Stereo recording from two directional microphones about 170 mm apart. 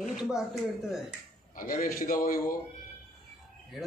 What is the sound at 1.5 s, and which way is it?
A man's voice, 55° left (ahead or behind).